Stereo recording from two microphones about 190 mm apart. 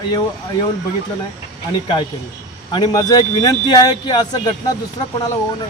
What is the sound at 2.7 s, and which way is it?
Speech, 20° left (ahead or behind).